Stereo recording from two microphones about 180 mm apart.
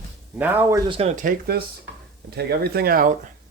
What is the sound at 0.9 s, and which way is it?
Speech, 30° right (ahead or behind).